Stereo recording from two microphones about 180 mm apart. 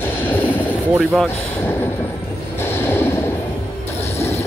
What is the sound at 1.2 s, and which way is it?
Speech, 10° left (ahead or behind).